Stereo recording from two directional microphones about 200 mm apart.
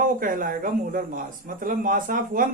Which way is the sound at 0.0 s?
45° right (ahead or behind).